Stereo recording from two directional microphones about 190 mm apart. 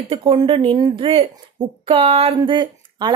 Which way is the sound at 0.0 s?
30° right (ahead or behind).